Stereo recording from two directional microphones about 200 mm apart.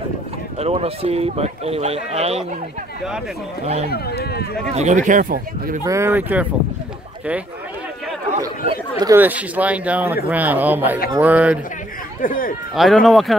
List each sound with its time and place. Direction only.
0.6 s speech: 30° right (ahead or behind)
3.6 s speech: 35° right (ahead or behind)
3.9 s speech: 50° left (ahead or behind)
4.7 s speech: 35° right (ahead or behind)
5.9 s speech: 15° right (ahead or behind)
8.9 s speech: 15° right (ahead or behind)
12.2 s speech: 45° left (ahead or behind)
12.7 s speech: centre (ahead or behind)